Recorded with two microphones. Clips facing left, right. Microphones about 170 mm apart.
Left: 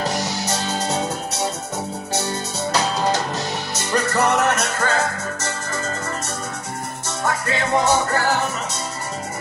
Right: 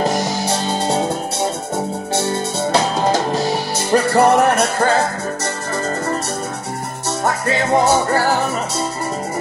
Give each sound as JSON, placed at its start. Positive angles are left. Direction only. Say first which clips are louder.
{"t": 0.5, "sound": "music", "louder": "right 4 dB", "side_deg": -30}
{"t": 3.3, "sound": "music", "louder": "right 7 dB", "side_deg": -35}
{"t": 7.1, "sound": "music", "louder": "right 5 dB", "side_deg": -35}